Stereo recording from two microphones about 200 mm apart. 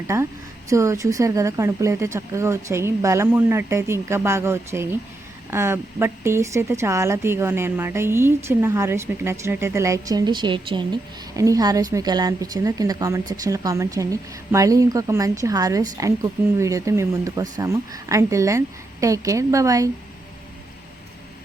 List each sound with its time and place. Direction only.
0.1 s a woman's voice: 15° right (ahead or behind)